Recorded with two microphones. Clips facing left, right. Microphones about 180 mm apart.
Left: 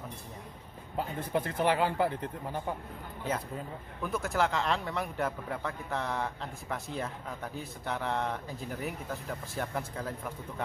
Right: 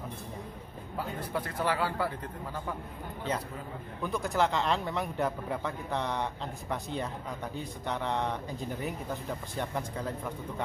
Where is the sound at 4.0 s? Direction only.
Centre (ahead or behind).